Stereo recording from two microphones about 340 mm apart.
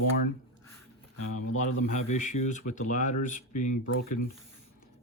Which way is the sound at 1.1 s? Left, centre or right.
Left.